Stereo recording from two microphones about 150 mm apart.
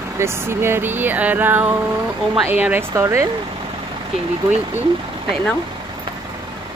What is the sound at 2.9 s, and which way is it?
Speech, 20° right (ahead or behind).